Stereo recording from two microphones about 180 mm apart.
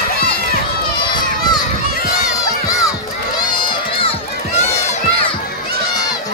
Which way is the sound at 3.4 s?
25° left (ahead or behind).